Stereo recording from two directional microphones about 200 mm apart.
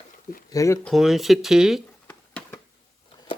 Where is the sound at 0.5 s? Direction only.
15° left (ahead or behind).